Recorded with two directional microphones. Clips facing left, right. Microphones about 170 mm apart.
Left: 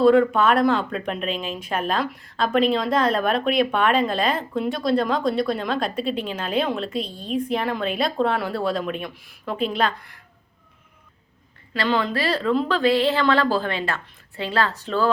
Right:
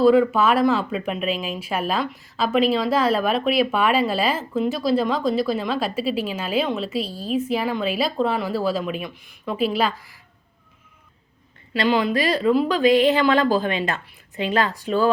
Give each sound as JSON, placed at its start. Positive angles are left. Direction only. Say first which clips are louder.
{"t": 0.0, "sound": "speech", "louder": "even", "side_deg": -5}
{"t": 11.7, "sound": "speech", "louder": "right 3 dB", "side_deg": -15}